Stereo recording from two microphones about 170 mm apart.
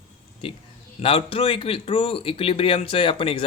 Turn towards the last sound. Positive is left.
turn(degrees=30)  # may be behind; listen again after turning